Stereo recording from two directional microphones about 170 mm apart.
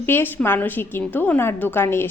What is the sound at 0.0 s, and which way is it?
A woman's voice, 10° left (ahead or behind).